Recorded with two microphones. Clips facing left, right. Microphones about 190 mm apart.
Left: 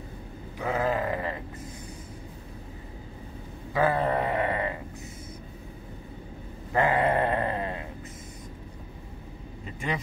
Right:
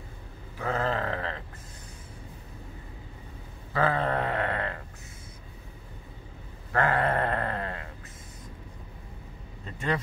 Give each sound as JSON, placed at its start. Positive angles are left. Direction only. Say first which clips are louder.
{"t": 0.6, "sound": "sheep", "louder": "left 2 dB", "side_deg": 10}
{"t": 3.7, "sound": "sheep", "louder": "left 2 dB", "side_deg": 10}
{"t": 6.7, "sound": "sheep", "louder": "left 2 dB", "side_deg": 15}
{"t": 9.7, "sound": "vehicle", "louder": "right 2 dB", "side_deg": 10}